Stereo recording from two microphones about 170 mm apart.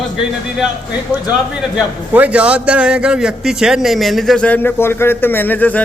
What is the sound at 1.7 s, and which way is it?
A man's voice, 10° right (ahead or behind).